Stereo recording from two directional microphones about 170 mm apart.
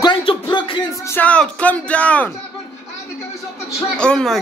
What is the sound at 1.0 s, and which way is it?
Speech, 10° left (ahead or behind).